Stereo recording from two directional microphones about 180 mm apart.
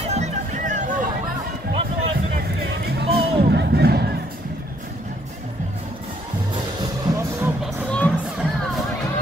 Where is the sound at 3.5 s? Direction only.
65° right (ahead or behind).